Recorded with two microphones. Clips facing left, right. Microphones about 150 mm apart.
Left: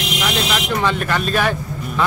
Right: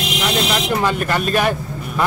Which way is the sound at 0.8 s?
10° right (ahead or behind).